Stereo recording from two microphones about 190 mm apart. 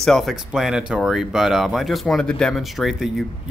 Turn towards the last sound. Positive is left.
turn(degrees=0)  # may be behind; listen again after turning